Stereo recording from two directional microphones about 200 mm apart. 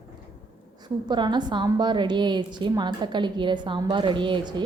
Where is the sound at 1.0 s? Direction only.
20° right (ahead or behind).